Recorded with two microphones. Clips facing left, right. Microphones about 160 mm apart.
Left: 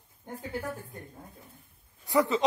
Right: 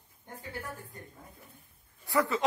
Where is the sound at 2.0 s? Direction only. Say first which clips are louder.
Left 3 dB; 20° left (ahead or behind).